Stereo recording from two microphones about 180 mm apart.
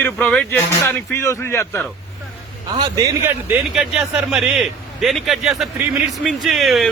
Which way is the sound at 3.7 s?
5° right (ahead or behind).